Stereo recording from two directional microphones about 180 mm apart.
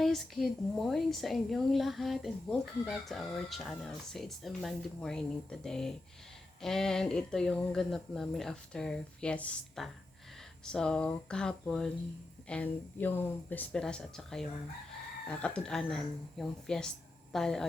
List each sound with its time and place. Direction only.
0.0 s a woman's voice: centre (ahead or behind)